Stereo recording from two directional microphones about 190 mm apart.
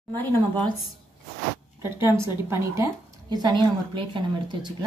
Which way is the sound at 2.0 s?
15° right (ahead or behind).